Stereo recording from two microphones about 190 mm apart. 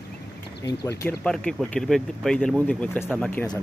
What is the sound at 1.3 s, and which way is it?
Speech, 5° left (ahead or behind).